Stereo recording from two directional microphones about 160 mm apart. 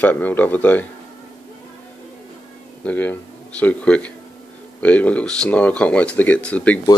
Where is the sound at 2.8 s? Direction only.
10° left (ahead or behind).